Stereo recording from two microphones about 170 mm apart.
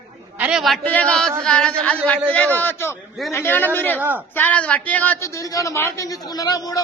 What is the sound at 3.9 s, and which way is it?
Speech, 10° right (ahead or behind).